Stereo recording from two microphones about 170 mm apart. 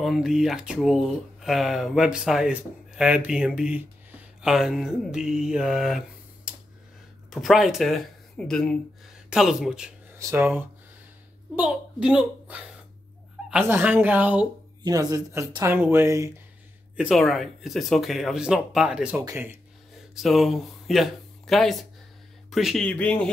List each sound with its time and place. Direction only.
0.0 s speech: centre (ahead or behind)
4.4 s mantra: 5° right (ahead or behind)
7.2 s speech: centre (ahead or behind)
10.1 s a woman's voice: 15° right (ahead or behind)
14.8 s speech: 20° right (ahead or behind)
16.9 s speech: 5° right (ahead or behind)
20.2 s speech: centre (ahead or behind)